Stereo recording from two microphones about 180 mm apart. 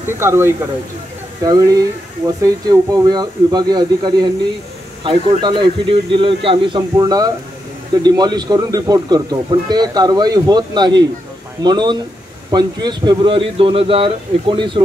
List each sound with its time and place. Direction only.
0.0 s speech: 15° right (ahead or behind)